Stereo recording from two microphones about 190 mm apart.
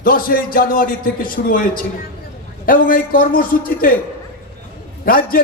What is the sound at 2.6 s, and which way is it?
A man's voice, 50° left (ahead or behind).